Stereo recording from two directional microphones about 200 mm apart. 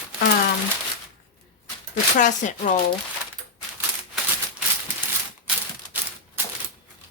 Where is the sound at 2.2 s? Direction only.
40° left (ahead or behind).